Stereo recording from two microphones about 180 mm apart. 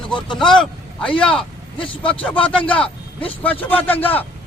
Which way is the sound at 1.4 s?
30° left (ahead or behind).